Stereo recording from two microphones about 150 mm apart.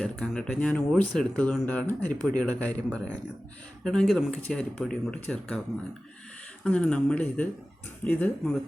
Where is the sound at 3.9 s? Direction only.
5° left (ahead or behind).